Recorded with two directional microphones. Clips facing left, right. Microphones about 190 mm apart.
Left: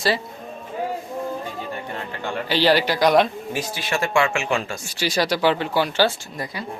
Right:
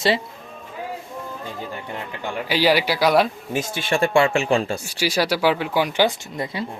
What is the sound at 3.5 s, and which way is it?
Speech, 25° right (ahead or behind).